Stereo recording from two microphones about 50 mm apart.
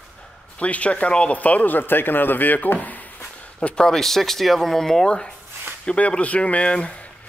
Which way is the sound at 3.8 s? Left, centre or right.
Centre.